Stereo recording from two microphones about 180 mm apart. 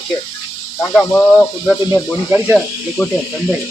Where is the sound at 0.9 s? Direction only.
Centre (ahead or behind).